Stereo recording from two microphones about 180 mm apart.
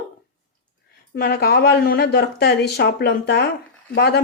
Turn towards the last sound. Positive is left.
turn(degrees=60)  # may be behind; listen again after turning